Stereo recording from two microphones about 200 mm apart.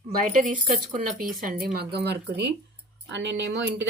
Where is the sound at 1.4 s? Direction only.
50° right (ahead or behind).